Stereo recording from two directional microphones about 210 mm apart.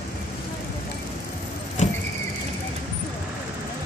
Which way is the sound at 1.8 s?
35° left (ahead or behind).